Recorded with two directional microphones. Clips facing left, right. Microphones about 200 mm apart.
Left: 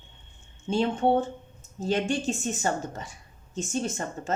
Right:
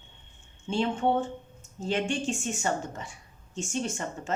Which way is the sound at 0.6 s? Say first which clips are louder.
Left 3 dB; 40° left (ahead or behind).